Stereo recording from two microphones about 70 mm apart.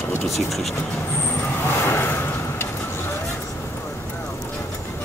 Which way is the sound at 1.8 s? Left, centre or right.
Left.